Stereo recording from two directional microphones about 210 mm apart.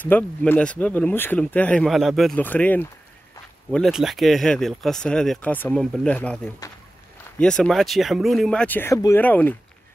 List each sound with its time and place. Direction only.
0.0 s speech: 10° left (ahead or behind)